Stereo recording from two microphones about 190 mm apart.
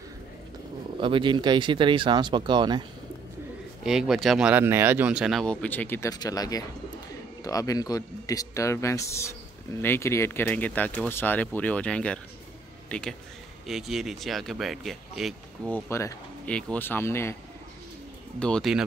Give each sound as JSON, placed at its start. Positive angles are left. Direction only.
{"t": 1.0, "sound": "speech", "side_deg": -25}
{"t": 3.8, "sound": "speech", "side_deg": 0}
{"t": 15.9, "sound": "speech", "side_deg": 15}
{"t": 18.4, "sound": "speech", "side_deg": 0}